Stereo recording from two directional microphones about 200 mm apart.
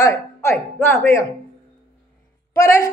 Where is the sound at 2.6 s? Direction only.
15° left (ahead or behind).